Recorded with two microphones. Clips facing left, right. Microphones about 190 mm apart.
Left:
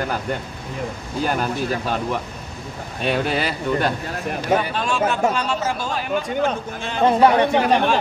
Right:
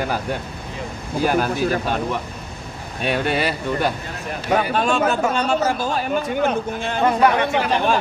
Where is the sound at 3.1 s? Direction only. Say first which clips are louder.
Right 1 dB; centre (ahead or behind).